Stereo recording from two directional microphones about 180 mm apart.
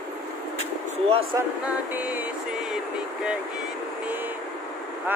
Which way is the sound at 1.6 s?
10° right (ahead or behind).